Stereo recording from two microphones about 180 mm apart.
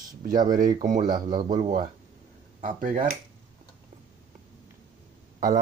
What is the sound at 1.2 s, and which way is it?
Speech, 25° right (ahead or behind).